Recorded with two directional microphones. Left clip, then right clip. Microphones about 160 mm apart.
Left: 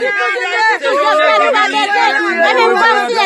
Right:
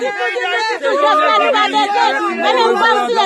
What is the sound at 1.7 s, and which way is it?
Speech, 45° right (ahead or behind).